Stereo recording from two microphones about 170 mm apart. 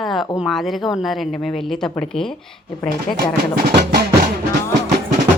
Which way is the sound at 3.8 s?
75° right (ahead or behind).